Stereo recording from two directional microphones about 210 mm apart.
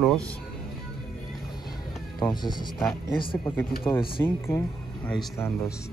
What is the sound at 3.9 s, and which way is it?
Speech, 5° left (ahead or behind).